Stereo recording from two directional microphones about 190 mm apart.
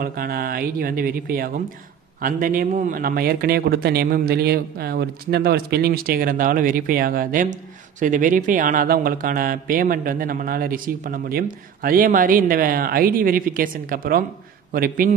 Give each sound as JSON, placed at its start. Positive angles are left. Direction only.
{"t": 0.0, "sound": "a man's voice", "side_deg": -50}